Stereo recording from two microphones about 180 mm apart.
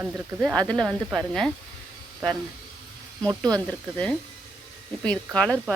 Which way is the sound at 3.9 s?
5° left (ahead or behind).